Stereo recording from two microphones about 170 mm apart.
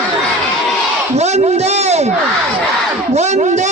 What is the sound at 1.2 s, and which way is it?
Speech, 40° right (ahead or behind).